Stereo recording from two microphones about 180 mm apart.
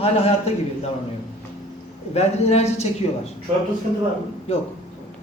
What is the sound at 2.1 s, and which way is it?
Speech, 35° left (ahead or behind).